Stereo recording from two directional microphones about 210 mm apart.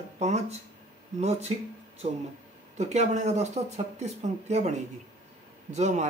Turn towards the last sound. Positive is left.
turn(degrees=-35)  # may be behind; listen again after turning